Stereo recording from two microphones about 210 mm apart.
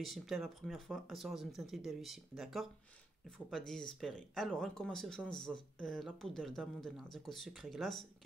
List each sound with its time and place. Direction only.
0.0 s speech: centre (ahead or behind)